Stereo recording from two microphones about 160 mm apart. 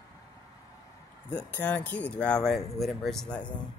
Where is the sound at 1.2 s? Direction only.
10° left (ahead or behind).